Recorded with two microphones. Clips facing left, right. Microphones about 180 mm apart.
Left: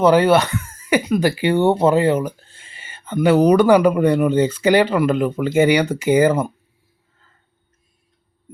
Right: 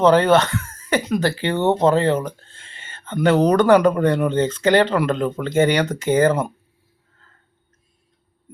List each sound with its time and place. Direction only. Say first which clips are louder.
0.0 s speech: left 1 dB; 10° left (ahead or behind)